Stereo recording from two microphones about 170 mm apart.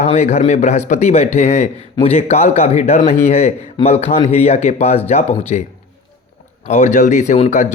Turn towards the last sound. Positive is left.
turn(degrees=45)  # may be behind; listen again after turning